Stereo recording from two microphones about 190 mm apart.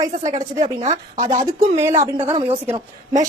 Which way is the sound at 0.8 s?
40° right (ahead or behind).